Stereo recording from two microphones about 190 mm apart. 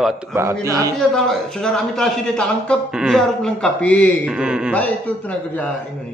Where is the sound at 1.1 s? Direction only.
5° left (ahead or behind).